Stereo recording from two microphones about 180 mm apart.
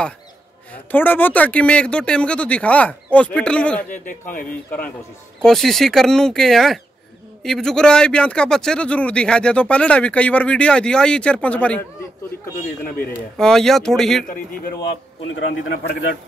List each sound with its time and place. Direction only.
0.9 s speech: 10° left (ahead or behind)
3.9 s speech: 45° left (ahead or behind)
4.5 s a man's voice: 10° left (ahead or behind)
13.4 s a man's voice: centre (ahead or behind)
15.3 s a man's voice: 65° left (ahead or behind)